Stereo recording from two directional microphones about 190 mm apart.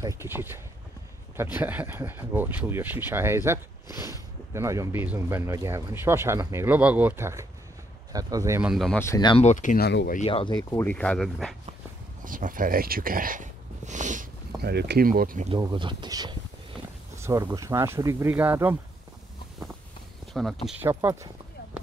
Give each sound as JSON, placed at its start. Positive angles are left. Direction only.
{"t": 0.0, "sound": "speech", "side_deg": -15}
{"t": 4.6, "sound": "speech", "side_deg": -15}
{"t": 8.6, "sound": "speech", "side_deg": 0}
{"t": 9.0, "sound": "speech", "side_deg": 20}
{"t": 9.4, "sound": "speech", "side_deg": 40}
{"t": 10.2, "sound": "speech", "side_deg": 25}
{"t": 10.9, "sound": "speech", "side_deg": 5}
{"t": 12.3, "sound": "speech", "side_deg": -45}
{"t": 14.6, "sound": "speech", "side_deg": -60}
{"t": 15.5, "sound": "speech", "side_deg": -25}
{"t": 20.4, "sound": "speech", "side_deg": -5}
{"t": 20.8, "sound": "speech", "side_deg": -15}